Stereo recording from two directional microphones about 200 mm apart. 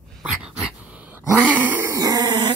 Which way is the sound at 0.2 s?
5° right (ahead or behind).